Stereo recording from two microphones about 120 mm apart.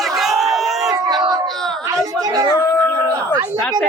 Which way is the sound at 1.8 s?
25° right (ahead or behind).